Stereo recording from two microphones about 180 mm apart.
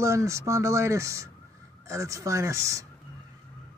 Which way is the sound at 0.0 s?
15° right (ahead or behind).